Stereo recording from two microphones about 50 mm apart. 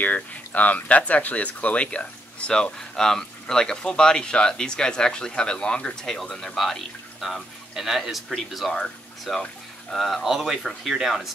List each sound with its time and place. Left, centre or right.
0.0 s speech: left; by 11.2 s centre